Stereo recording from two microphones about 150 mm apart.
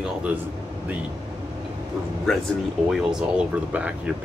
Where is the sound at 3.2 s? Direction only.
10° right (ahead or behind).